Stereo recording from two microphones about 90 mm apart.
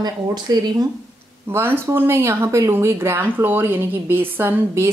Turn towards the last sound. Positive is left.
turn(degrees=-25)  # may be behind; listen again after turning